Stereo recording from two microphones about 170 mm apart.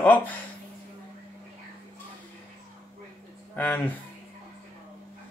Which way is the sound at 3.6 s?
10° left (ahead or behind).